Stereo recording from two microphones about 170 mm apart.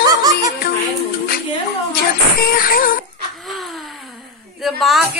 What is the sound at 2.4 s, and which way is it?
Music, 55° left (ahead or behind).